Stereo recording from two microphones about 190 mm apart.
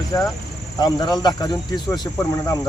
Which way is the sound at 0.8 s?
20° left (ahead or behind).